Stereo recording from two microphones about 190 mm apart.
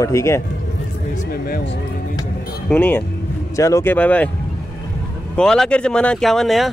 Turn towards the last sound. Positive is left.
turn(degrees=0)  # may be behind; listen again after turning